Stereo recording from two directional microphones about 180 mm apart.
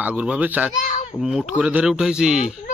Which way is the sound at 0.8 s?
45° left (ahead or behind).